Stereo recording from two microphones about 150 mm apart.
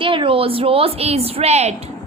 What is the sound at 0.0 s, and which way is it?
A woman's voice, 35° right (ahead or behind).